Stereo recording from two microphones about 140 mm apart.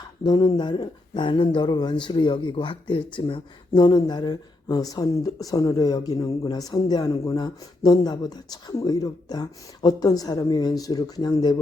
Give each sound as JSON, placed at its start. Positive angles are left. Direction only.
{"t": 0.3, "sound": "speech", "side_deg": 30}